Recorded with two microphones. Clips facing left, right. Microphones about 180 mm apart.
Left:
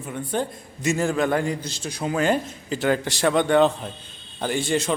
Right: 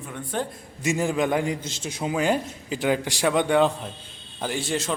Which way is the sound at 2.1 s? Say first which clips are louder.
Left 2 dB; 10° right (ahead or behind).